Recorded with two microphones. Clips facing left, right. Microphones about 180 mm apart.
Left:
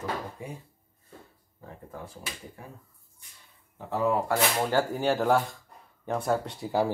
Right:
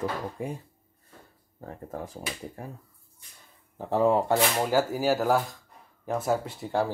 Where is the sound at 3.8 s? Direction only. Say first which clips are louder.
Right 4 dB; 30° right (ahead or behind).